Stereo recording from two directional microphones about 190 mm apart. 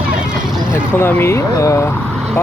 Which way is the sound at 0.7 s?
10° left (ahead or behind).